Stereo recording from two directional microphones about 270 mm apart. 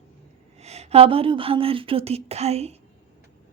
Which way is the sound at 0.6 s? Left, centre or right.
Right.